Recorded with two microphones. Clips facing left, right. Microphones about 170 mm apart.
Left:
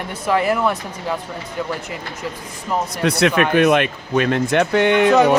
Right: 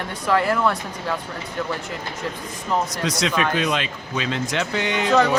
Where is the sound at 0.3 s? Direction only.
15° left (ahead or behind).